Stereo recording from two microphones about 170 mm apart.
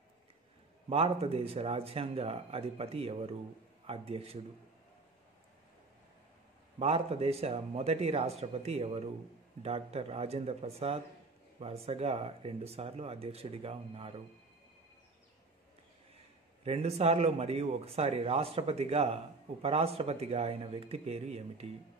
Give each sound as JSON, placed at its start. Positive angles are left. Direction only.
{"t": 0.8, "sound": "speech", "side_deg": -35}
{"t": 6.8, "sound": "speech", "side_deg": -35}
{"t": 16.6, "sound": "speech", "side_deg": -35}